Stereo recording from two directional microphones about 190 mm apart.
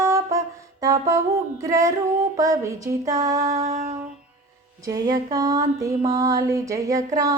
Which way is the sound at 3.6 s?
35° right (ahead or behind).